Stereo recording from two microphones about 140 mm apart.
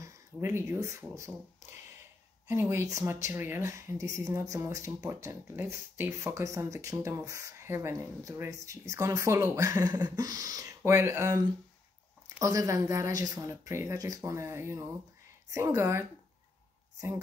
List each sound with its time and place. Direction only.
0.0 s speech: 20° right (ahead or behind)